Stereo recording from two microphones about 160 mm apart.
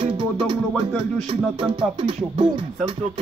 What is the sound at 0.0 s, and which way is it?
Music, 35° right (ahead or behind).